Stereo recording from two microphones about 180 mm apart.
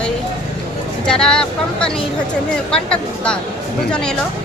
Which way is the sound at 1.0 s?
5° left (ahead or behind).